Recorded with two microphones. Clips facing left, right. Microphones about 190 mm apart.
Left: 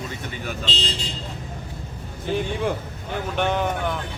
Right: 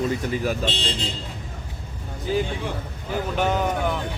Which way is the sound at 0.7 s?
55° right (ahead or behind).